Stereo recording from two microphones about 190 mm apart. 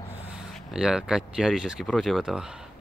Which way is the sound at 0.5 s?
Centre (ahead or behind).